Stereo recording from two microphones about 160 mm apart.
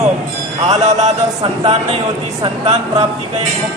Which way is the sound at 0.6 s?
45° right (ahead or behind).